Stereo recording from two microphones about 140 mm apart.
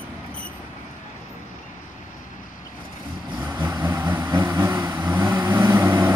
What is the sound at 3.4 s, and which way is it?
Vehicle, 15° right (ahead or behind).